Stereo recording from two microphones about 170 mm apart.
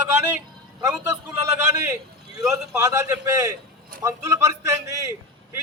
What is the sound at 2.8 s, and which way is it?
A man's voice, 15° right (ahead or behind).